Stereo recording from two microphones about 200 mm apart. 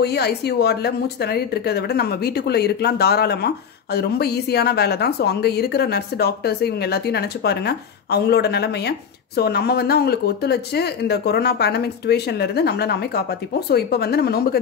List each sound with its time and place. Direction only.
0.0 s speech: 55° left (ahead or behind)